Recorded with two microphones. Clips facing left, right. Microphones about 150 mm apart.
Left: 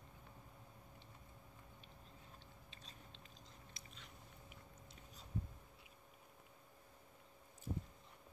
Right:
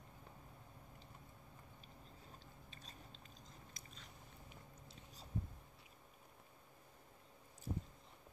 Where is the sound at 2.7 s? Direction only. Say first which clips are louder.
Right 3 dB; 45° right (ahead or behind).